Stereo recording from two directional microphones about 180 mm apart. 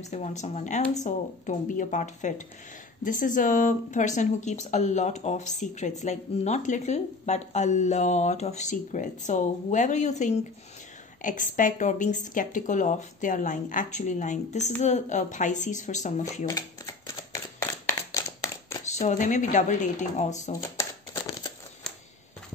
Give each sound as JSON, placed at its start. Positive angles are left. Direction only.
{"t": 0.0, "sound": "speech", "side_deg": 40}
{"t": 16.4, "sound": "shuffling cards", "side_deg": 20}
{"t": 18.1, "sound": "a sound", "side_deg": 15}
{"t": 18.9, "sound": "speech", "side_deg": 40}